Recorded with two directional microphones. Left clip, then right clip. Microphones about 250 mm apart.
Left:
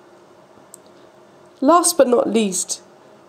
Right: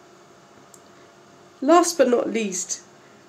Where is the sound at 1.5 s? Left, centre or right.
Centre.